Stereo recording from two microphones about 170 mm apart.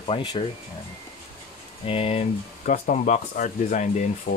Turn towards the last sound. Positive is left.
turn(degrees=45)  # may be behind; listen again after turning